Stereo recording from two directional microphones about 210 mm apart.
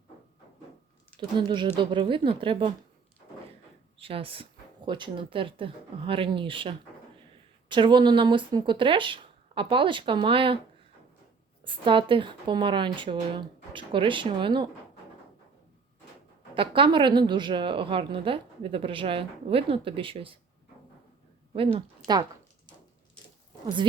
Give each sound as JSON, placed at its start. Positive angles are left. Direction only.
{"t": 1.4, "sound": "a woman's voice", "side_deg": -20}
{"t": 3.9, "sound": "a woman's voice", "side_deg": -25}
{"t": 11.6, "sound": "a woman's voice", "side_deg": -25}
{"t": 16.6, "sound": "a woman's voice", "side_deg": -25}
{"t": 21.5, "sound": "a woman's voice", "side_deg": -25}